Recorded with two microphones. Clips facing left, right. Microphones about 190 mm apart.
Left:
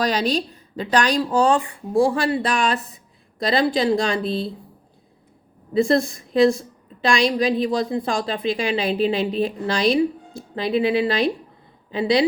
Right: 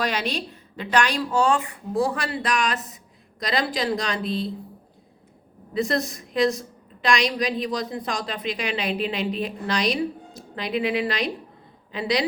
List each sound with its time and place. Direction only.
0.0 s a woman's voice: 35° left (ahead or behind)
5.7 s a woman's voice: 30° left (ahead or behind)